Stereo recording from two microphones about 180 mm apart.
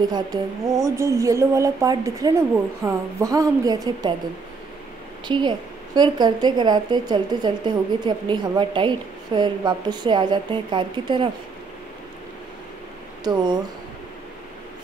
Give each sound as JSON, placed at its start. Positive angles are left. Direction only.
{"t": 0.0, "sound": "a woman's voice", "side_deg": -20}
{"t": 5.3, "sound": "a woman's voice", "side_deg": -25}
{"t": 13.2, "sound": "a woman's voice", "side_deg": -25}